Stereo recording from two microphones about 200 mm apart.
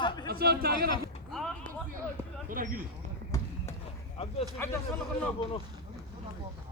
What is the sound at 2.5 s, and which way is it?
Speech, 45° right (ahead or behind).